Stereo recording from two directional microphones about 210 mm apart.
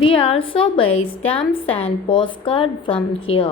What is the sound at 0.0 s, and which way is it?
A woman's voice, 25° left (ahead or behind).